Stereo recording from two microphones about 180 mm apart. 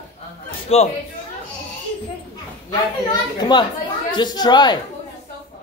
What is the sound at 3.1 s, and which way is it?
A woman's voice, 25° left (ahead or behind).